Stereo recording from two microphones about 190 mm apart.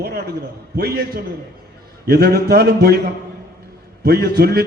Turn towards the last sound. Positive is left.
turn(degrees=-55)  # may be behind; listen again after turning